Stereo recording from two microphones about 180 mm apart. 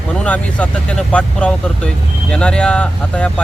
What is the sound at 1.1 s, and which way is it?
Speech, 10° left (ahead or behind).